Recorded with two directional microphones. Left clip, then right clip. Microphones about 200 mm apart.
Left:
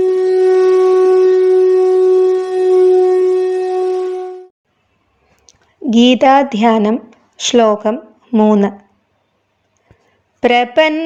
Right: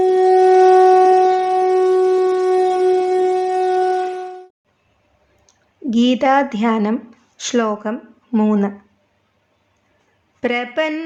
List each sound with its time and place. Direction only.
0.0 s shofar: centre (ahead or behind)
5.5 s speech: 25° left (ahead or behind)
8.3 s speech: 10° left (ahead or behind)
10.4 s speech: 30° left (ahead or behind)